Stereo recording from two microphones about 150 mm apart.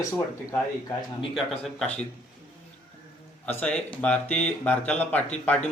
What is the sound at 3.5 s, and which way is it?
A man's voice, 10° left (ahead or behind).